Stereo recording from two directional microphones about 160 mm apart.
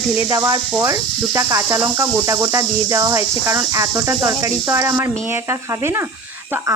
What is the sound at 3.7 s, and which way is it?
Speech, 20° right (ahead or behind).